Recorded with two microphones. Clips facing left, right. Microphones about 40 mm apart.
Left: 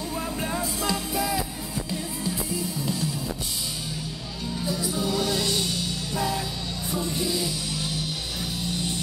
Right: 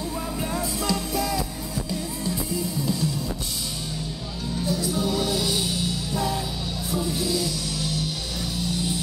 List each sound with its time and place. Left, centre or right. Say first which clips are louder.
0.4 s music: right 2 dB; centre
4.6 s music: right 2 dB; centre
7.1 s music: right 1 dB; centre